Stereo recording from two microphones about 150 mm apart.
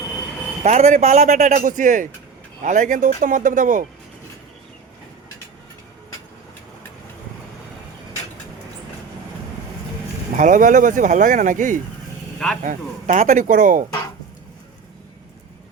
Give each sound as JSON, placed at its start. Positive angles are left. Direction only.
{"t": 0.6, "sound": "speech", "side_deg": -50}
{"t": 10.3, "sound": "speech", "side_deg": -60}